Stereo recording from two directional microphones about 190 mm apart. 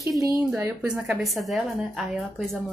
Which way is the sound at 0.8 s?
5° right (ahead or behind).